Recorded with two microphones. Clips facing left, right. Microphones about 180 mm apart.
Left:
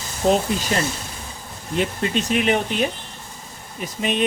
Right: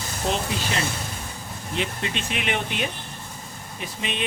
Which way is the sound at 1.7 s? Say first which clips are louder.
Left 7 dB; 45° left (ahead or behind).